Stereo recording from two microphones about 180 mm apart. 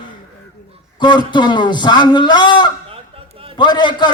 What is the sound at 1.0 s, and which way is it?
A man's voice, 25° left (ahead or behind).